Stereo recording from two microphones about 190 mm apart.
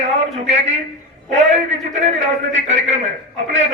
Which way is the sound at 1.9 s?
40° right (ahead or behind).